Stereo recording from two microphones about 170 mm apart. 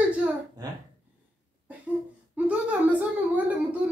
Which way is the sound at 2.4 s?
10° right (ahead or behind).